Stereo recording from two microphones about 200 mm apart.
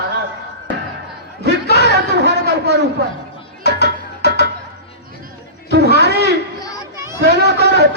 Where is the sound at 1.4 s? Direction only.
55° right (ahead or behind).